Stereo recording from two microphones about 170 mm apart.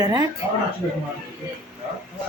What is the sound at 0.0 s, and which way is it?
Speech, 20° right (ahead or behind).